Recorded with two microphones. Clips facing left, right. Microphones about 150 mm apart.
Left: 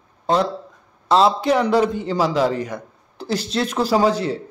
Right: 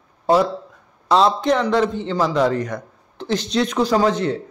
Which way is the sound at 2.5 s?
30° left (ahead or behind).